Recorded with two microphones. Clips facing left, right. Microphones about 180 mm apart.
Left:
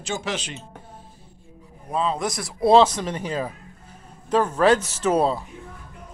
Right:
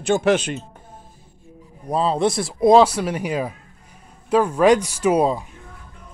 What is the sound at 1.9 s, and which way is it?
Speech, 35° right (ahead or behind).